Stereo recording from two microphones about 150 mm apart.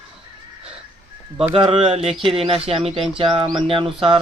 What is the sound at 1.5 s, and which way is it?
Speech, 35° right (ahead or behind).